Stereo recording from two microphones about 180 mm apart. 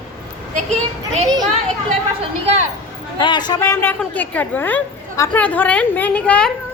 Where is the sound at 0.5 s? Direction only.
40° right (ahead or behind).